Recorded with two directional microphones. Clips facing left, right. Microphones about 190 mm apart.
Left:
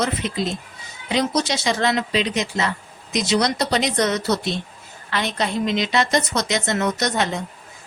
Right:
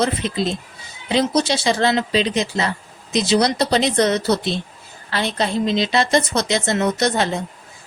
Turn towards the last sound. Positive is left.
turn(degrees=-30)  # may be behind; listen again after turning